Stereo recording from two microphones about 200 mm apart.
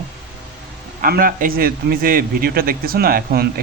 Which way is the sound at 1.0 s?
45° right (ahead or behind).